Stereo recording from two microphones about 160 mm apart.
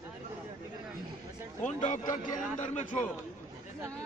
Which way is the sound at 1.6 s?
45° left (ahead or behind).